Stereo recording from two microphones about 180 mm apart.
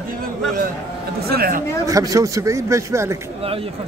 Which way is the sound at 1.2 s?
55° right (ahead or behind).